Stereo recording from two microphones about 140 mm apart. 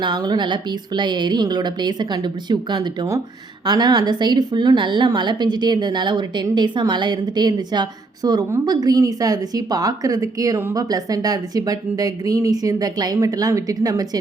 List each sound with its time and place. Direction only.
0.0 s a woman's voice: 30° right (ahead or behind)